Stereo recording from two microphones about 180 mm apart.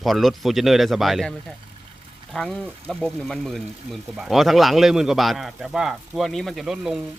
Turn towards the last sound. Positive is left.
turn(degrees=0)  # may be behind; listen again after turning